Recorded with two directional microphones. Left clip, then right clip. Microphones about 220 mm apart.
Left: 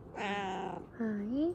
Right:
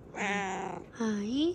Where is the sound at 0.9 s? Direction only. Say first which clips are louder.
Right 7 dB; 45° left (ahead or behind).